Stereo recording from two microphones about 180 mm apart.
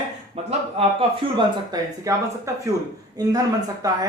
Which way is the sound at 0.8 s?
35° right (ahead or behind).